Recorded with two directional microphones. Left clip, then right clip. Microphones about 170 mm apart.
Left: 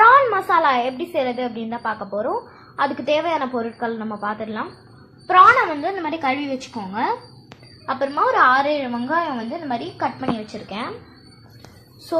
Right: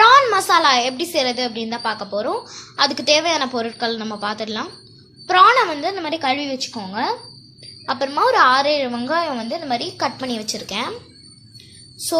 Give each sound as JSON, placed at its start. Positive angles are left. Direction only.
{"t": 0.0, "sound": "a woman's voice", "side_deg": -15}